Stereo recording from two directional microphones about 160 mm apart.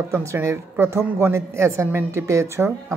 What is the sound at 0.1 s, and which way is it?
A woman's voice, 15° right (ahead or behind).